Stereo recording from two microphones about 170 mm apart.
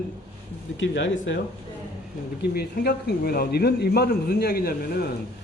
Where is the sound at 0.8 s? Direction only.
90° left.